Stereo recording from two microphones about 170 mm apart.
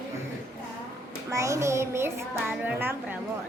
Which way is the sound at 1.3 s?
15° right (ahead or behind).